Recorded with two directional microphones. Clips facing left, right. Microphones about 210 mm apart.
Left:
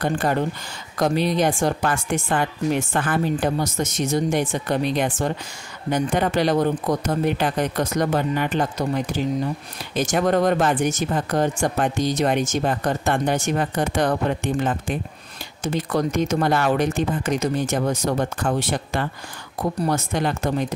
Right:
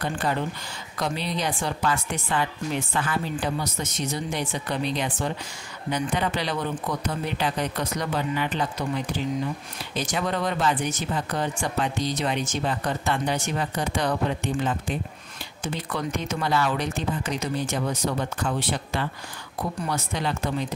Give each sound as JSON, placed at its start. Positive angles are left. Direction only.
{"t": 0.0, "sound": "speech", "side_deg": 50}